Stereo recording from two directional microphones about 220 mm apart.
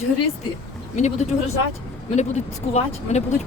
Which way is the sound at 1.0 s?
30° left (ahead or behind).